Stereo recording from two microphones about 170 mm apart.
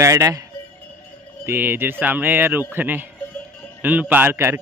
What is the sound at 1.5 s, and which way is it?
A man's voice, 10° right (ahead or behind).